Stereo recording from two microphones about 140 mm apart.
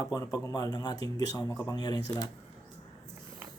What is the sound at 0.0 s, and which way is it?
Speech, 25° left (ahead or behind).